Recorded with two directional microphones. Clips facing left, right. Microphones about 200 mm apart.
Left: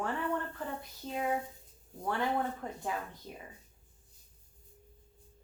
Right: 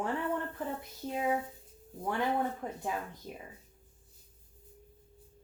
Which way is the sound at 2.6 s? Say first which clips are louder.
Right 1 dB; 15° right (ahead or behind).